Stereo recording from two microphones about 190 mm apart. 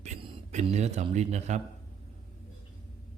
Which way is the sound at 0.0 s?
30° right (ahead or behind).